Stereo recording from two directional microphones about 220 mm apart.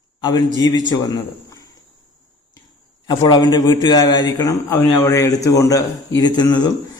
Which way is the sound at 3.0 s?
20° left (ahead or behind).